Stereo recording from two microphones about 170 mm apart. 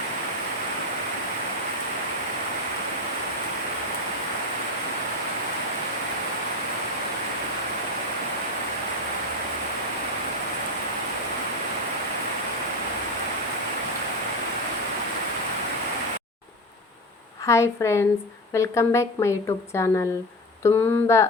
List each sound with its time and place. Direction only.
17.4 s a woman's voice: 15° left (ahead or behind)